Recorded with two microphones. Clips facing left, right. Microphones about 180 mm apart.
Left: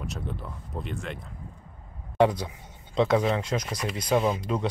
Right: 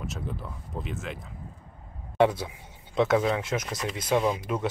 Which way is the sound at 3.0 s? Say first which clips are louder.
Even; centre (ahead or behind).